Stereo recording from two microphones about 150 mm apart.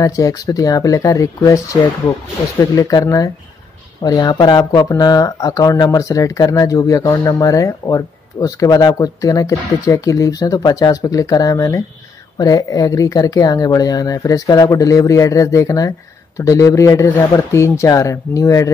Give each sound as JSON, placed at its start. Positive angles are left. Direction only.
{"t": 0.0, "sound": "speech", "side_deg": 25}